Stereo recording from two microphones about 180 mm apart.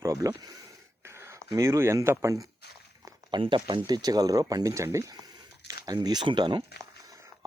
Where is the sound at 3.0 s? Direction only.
25° right (ahead or behind).